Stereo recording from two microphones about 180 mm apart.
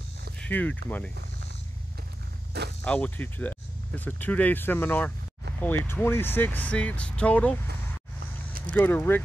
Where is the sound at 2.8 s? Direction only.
5° left (ahead or behind).